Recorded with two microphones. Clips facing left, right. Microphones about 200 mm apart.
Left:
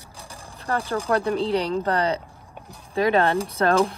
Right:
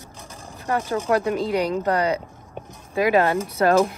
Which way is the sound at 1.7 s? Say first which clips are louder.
Right 1 dB; 30° left (ahead or behind).